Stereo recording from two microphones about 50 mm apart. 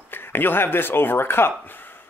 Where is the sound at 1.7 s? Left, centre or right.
Left.